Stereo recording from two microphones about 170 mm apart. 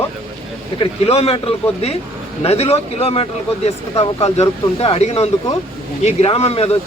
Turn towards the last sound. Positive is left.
turn(degrees=35)  # may be behind; listen again after turning